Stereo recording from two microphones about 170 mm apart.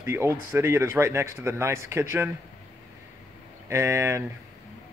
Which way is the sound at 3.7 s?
15° right (ahead or behind).